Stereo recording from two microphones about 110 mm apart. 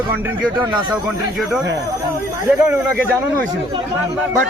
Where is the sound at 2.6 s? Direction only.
20° right (ahead or behind).